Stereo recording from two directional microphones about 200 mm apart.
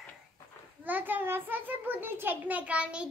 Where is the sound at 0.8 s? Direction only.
10° right (ahead or behind).